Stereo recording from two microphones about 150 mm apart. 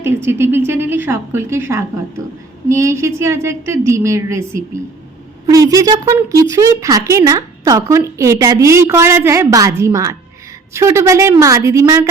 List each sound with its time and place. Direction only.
0.0 s a woman's voice: 15° right (ahead or behind)